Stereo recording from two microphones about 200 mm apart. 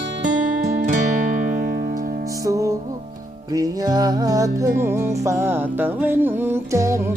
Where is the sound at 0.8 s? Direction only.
40° right (ahead or behind).